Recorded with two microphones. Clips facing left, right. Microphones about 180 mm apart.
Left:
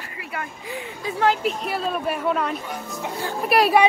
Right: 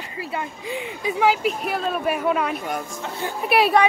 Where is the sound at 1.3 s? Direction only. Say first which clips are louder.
Left 1 dB; centre (ahead or behind).